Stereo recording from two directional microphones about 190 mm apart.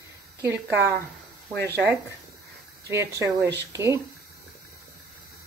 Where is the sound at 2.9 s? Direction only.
15° right (ahead or behind).